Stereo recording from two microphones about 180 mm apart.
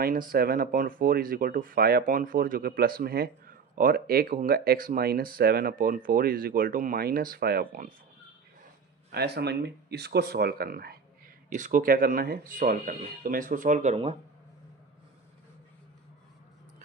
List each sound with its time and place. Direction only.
0.0 s speech: 50° right (ahead or behind)
9.1 s speech: 65° right (ahead or behind)
11.4 s speech: 45° right (ahead or behind)